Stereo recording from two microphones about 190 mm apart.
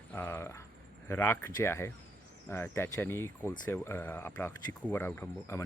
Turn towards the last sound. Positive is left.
turn(degrees=15)  # may be behind; listen again after turning